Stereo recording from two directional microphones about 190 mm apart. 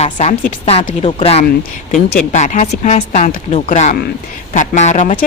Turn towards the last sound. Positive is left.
turn(degrees=35)  # may be behind; listen again after turning